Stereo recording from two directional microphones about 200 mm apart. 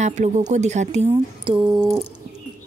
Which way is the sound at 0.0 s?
35° right (ahead or behind).